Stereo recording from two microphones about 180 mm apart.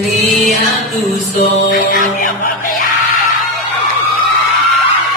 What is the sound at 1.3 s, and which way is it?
Music, 50° left (ahead or behind).